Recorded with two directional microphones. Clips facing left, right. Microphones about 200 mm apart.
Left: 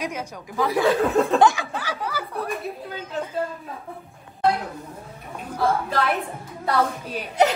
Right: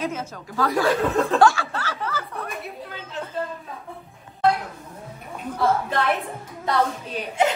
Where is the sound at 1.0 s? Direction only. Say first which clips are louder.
Left 2 dB; centre (ahead or behind).